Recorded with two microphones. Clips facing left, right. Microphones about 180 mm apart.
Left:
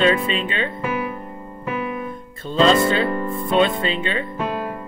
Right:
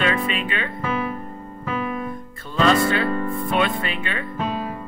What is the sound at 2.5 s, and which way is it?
Speech, 25° left (ahead or behind).